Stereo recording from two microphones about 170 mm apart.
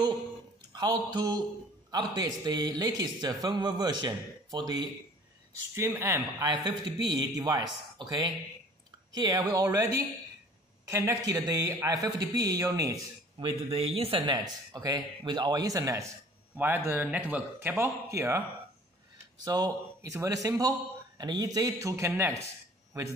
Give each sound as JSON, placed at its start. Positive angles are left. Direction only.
{"t": 0.7, "sound": "speech", "side_deg": -25}
{"t": 5.8, "sound": "speech", "side_deg": -15}
{"t": 6.4, "sound": "speech", "side_deg": -25}
{"t": 13.7, "sound": "speech", "side_deg": -35}
{"t": 19.4, "sound": "speech", "side_deg": -20}